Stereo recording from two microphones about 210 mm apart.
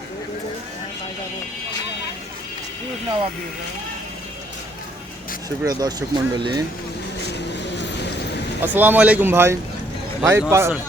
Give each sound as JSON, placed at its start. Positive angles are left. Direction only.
{"t": 5.6, "sound": "speech", "side_deg": -20}
{"t": 8.6, "sound": "a man's voice", "side_deg": -10}